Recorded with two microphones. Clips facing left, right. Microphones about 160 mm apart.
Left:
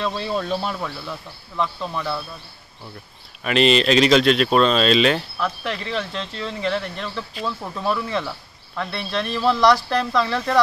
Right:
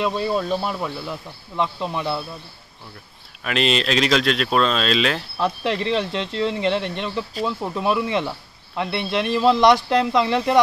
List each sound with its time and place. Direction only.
0.1 s speech: 5° right (ahead or behind)
3.4 s speech: centre (ahead or behind)
5.4 s speech: 25° right (ahead or behind)